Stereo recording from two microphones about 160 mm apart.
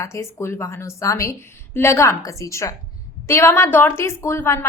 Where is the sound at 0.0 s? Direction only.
20° left (ahead or behind).